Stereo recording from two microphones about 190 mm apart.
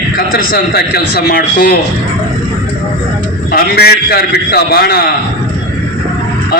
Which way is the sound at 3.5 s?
55° left (ahead or behind).